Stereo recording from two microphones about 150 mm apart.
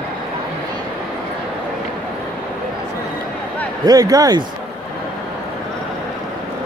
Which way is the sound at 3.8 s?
25° right (ahead or behind).